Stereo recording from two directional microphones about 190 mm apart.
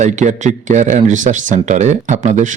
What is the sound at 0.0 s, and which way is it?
Speech, 40° right (ahead or behind).